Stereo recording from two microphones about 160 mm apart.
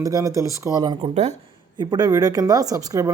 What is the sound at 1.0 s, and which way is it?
Speech, 45° right (ahead or behind).